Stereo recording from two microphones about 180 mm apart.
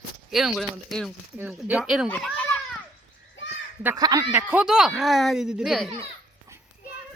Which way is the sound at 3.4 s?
90° left.